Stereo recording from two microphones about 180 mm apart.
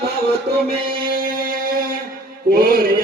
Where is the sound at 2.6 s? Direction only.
55° right (ahead or behind).